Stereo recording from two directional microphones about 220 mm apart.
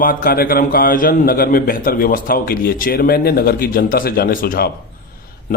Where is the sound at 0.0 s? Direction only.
40° left (ahead or behind).